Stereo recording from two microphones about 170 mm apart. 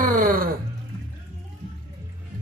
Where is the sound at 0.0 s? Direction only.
55° right (ahead or behind).